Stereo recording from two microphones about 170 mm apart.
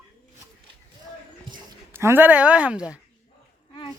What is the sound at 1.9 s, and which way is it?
A woman's voice, 15° right (ahead or behind).